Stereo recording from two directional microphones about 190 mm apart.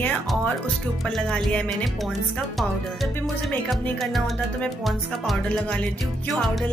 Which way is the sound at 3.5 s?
Centre (ahead or behind).